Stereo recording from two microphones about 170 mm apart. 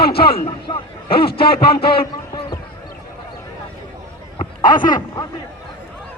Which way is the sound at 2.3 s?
20° left (ahead or behind).